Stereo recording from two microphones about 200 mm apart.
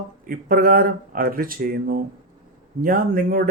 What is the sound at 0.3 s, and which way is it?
Speech, 45° right (ahead or behind).